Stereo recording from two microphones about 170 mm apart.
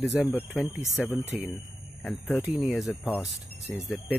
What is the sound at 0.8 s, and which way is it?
Speech, 15° left (ahead or behind).